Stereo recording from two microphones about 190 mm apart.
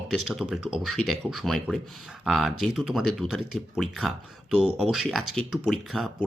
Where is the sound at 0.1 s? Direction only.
Centre (ahead or behind).